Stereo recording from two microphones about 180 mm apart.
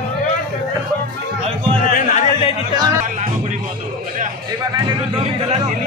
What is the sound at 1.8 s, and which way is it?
Music, 50° left (ahead or behind).